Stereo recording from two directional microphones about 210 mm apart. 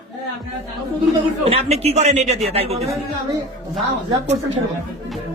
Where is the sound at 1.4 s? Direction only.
30° right (ahead or behind).